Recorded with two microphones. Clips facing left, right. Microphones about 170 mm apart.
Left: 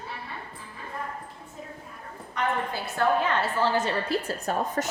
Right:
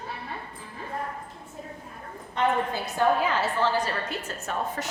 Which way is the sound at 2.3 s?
15° right (ahead or behind).